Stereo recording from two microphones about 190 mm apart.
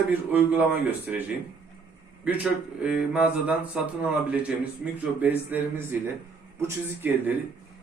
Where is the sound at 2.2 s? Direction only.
5° right (ahead or behind).